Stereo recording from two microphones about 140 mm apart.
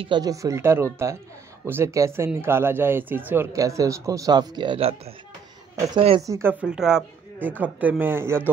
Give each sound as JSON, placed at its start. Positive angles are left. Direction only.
{"t": 0.0, "sound": "speech", "side_deg": -30}
{"t": 6.2, "sound": "speech", "side_deg": -20}
{"t": 6.6, "sound": "a woman's voice", "side_deg": -5}